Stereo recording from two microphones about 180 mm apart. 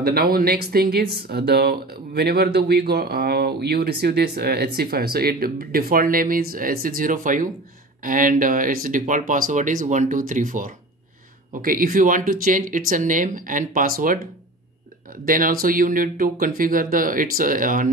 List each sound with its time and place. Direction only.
0.0 s speech: 55° right (ahead or behind)
15.2 s speech: 50° right (ahead or behind)